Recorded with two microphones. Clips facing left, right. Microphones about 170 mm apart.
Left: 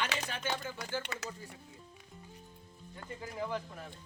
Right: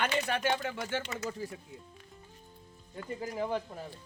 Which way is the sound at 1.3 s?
80° right.